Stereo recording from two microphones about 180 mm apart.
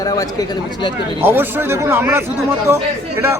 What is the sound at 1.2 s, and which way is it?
A man's voice, 10° right (ahead or behind).